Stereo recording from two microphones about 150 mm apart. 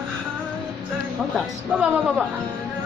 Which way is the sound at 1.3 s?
10° right (ahead or behind).